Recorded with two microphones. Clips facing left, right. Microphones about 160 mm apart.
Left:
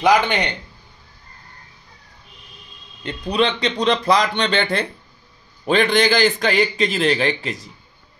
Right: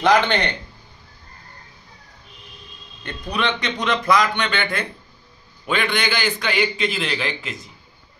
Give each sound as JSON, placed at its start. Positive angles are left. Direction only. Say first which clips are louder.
{"t": 0.0, "sound": "speech", "louder": "left 1 dB", "side_deg": 10}
{"t": 3.3, "sound": "a man's voice", "louder": "left 4 dB", "side_deg": 30}